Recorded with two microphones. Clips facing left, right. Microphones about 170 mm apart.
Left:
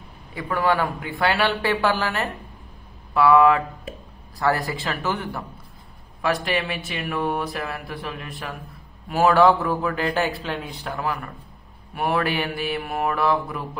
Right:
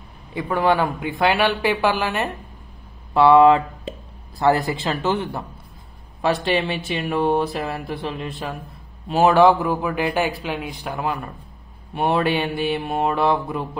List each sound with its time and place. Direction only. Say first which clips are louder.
0.3 s a man's voice: right 3 dB; 20° right (ahead or behind)